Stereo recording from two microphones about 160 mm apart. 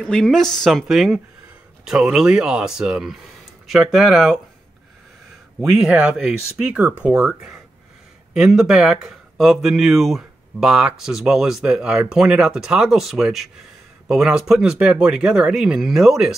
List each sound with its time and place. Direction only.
0.0 s speech: 5° left (ahead or behind)
5.6 s speech: centre (ahead or behind)